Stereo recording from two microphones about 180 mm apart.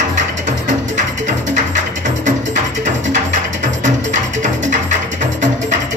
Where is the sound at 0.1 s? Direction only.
45° right (ahead or behind).